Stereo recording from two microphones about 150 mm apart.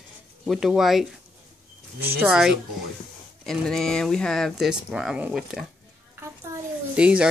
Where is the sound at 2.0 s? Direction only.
90° right.